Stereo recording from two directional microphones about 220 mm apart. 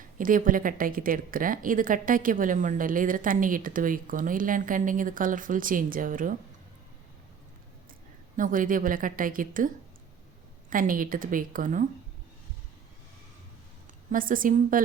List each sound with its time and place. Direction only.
0.2 s a woman's voice: 40° right (ahead or behind)
8.4 s a woman's voice: 40° right (ahead or behind)
14.1 s a woman's voice: 40° right (ahead or behind)